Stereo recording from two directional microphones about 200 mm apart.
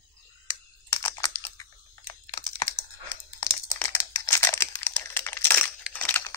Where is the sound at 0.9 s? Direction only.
15° left (ahead or behind).